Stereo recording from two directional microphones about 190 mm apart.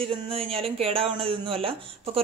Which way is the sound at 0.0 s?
30° right (ahead or behind).